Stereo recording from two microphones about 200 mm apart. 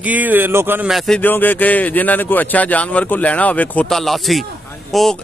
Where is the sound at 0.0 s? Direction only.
10° right (ahead or behind).